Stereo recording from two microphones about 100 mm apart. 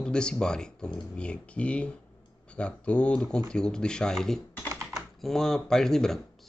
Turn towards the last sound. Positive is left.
turn(degrees=5)  # may be behind; listen again after turning